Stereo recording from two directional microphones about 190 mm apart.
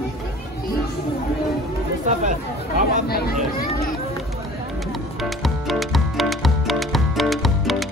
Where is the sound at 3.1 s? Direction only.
55° left (ahead or behind).